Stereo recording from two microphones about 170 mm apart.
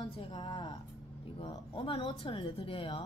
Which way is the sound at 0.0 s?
25° left (ahead or behind).